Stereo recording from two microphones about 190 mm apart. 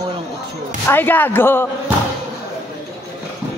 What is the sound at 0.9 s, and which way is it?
Speech, 10° left (ahead or behind).